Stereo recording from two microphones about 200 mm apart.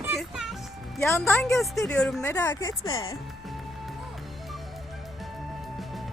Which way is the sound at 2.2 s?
15° left (ahead or behind).